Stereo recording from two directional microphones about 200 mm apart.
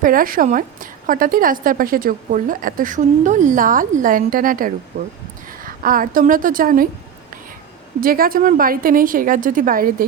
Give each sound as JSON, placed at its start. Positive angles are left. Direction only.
{"t": 0.0, "sound": "a woman's voice", "side_deg": -45}
{"t": 8.0, "sound": "a woman's voice", "side_deg": -45}